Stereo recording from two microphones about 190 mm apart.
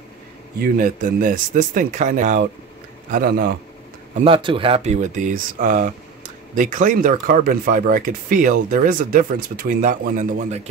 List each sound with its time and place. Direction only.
0.6 s speech: 45° right (ahead or behind)
4.2 s speech: 25° right (ahead or behind); by 10.6 s 45° right (ahead or behind)